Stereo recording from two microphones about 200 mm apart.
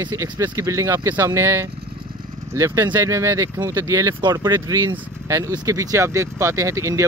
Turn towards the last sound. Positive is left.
turn(degrees=-15)  # may be behind; listen again after turning